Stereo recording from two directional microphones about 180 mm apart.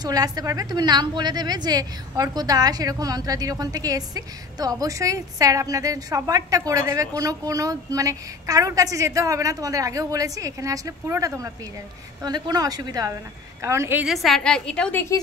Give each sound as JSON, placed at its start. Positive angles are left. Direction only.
{"t": 0.0, "sound": "a woman's voice", "side_deg": -20}